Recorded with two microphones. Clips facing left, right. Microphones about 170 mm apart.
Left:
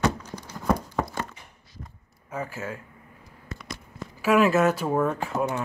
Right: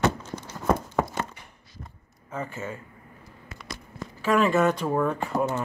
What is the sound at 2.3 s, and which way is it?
Speech, 5° left (ahead or behind).